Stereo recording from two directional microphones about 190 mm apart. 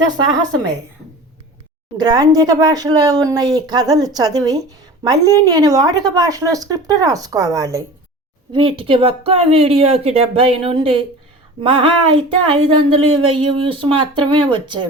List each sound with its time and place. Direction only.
0.1 s speech: 20° right (ahead or behind)
2.0 s speech: 20° right (ahead or behind)
8.5 s speech: 25° right (ahead or behind)
12.1 s speech: 25° right (ahead or behind)